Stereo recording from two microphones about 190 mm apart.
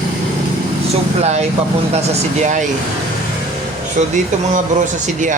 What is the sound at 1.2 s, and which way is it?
Speech, 35° right (ahead or behind).